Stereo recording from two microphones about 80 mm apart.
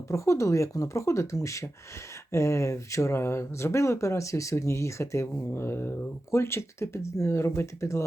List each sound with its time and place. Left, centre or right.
0.1 s speech: left